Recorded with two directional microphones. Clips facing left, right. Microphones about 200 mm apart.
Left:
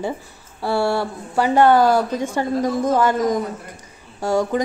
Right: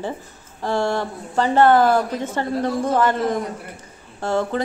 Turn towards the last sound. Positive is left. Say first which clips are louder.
# left 2 dB
turn(degrees=10)  # may be behind; listen again after turning